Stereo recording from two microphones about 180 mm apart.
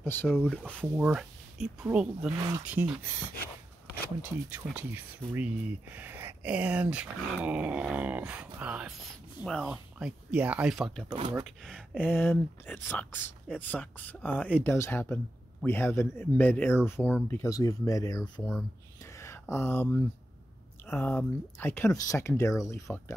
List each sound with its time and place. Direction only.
0.0 s speech: 10° left (ahead or behind)
0.9 s speech: 5° right (ahead or behind)
4.7 s speech: 10° right (ahead or behind)
11.1 s speech: 30° right (ahead or behind)
11.3 s speech: centre (ahead or behind); by 18.4 s 20° left (ahead or behind)
19.1 s a sound: 15° left (ahead or behind)
20.8 s speech: 10° left (ahead or behind)